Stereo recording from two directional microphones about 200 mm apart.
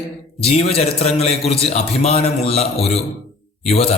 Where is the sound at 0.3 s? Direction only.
30° left (ahead or behind).